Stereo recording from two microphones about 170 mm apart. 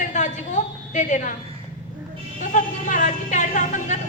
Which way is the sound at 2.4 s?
45° left (ahead or behind).